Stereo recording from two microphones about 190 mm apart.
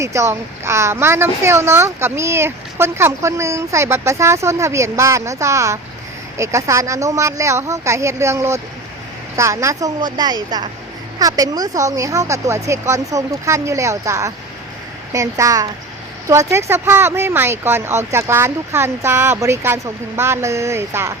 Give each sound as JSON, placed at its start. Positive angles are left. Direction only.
{"t": 0.0, "sound": "speech", "side_deg": -15}